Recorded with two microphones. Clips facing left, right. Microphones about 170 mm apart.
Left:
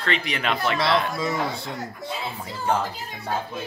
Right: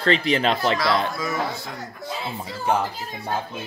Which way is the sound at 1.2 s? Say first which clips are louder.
Left 1 dB; 30° left (ahead or behind).